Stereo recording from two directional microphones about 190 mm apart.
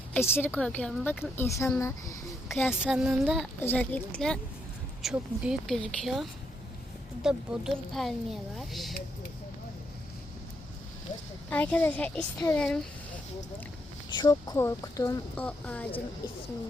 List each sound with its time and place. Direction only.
0.1 s a woman's voice: 10° left (ahead or behind)
2.8 s a woman's voice: 5° right (ahead or behind)
3.6 s a woman's voice: 10° left (ahead or behind)
11.4 s a woman's voice: 10° left (ahead or behind)
14.1 s a woman's voice: 20° left (ahead or behind)
15.4 s a woman's voice: 5° left (ahead or behind)